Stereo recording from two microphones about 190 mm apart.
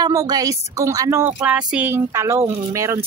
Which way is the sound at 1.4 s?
5° right (ahead or behind).